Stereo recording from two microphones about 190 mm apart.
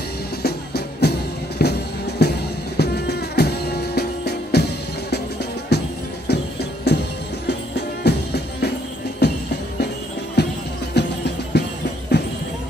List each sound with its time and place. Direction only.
0.4 s music: 55° left (ahead or behind)
10.4 s music: 60° left (ahead or behind)